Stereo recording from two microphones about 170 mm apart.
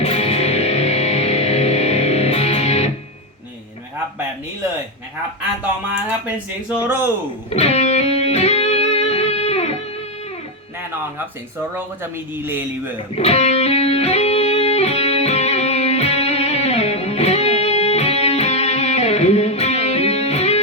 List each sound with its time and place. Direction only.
0.0 s music: 40° left (ahead or behind)
6.8 s speech: 15° right (ahead or behind)
7.5 s music: 40° left (ahead or behind)
12.1 s speech: 15° right (ahead or behind)
13.1 s music: 40° left (ahead or behind)